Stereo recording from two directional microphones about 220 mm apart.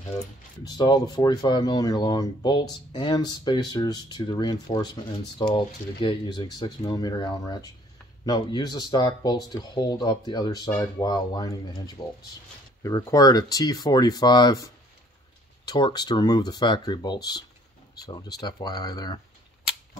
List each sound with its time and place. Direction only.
0.7 s speech: 20° left (ahead or behind)